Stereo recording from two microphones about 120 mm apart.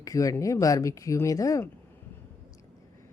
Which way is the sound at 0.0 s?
30° left (ahead or behind).